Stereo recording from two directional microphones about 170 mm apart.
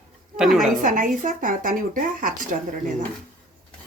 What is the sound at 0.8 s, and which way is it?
Speech, 50° right (ahead or behind).